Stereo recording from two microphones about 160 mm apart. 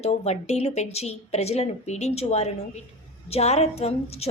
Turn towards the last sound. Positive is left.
turn(degrees=40)  # may be behind; listen again after turning